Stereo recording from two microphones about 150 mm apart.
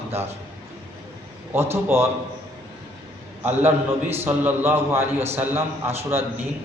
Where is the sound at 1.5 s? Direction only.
15° right (ahead or behind).